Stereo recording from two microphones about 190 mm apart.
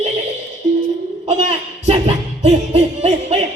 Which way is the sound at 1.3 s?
35° right (ahead or behind).